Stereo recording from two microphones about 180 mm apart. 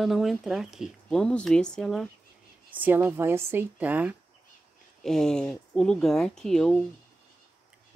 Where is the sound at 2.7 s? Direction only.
10° right (ahead or behind).